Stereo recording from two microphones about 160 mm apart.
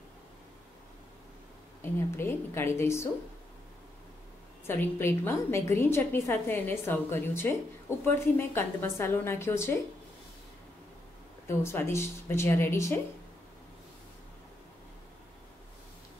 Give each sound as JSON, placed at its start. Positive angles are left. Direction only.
{"t": 1.8, "sound": "a woman's voice", "side_deg": 15}
{"t": 4.6, "sound": "a woman's voice", "side_deg": 15}
{"t": 11.4, "sound": "a woman's voice", "side_deg": 15}